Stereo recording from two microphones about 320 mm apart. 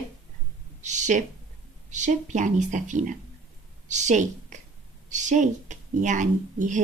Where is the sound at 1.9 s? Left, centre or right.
Right.